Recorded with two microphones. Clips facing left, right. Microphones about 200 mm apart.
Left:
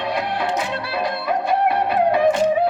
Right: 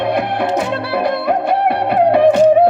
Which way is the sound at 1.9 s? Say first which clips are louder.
Right 8 dB; 65° right (ahead or behind).